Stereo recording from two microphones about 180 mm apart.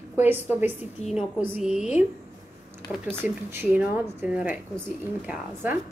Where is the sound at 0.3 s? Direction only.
10° right (ahead or behind).